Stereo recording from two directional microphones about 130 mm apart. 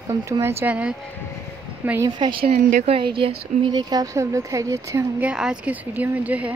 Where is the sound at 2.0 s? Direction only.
35° right (ahead or behind).